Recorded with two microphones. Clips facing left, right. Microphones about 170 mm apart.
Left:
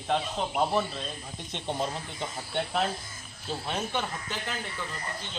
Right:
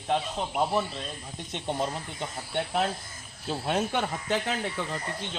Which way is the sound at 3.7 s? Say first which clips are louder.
Right 5 dB; 60° right (ahead or behind).